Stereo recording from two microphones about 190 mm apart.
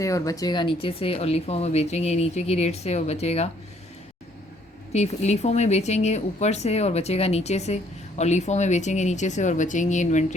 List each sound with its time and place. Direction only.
0.0 s speech: 15° left (ahead or behind); by 3.5 s 35° left (ahead or behind)
4.9 s speech: 35° left (ahead or behind)